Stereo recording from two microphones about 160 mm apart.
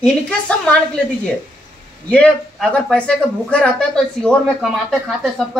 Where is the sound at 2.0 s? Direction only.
5° left (ahead or behind).